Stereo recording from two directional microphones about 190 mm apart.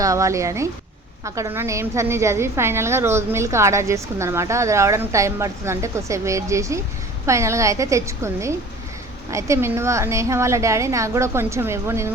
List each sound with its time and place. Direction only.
0.0 s a woman's voice: 15° right (ahead or behind)